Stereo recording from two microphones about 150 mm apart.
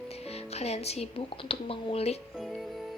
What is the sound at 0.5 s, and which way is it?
Music, 45° left (ahead or behind).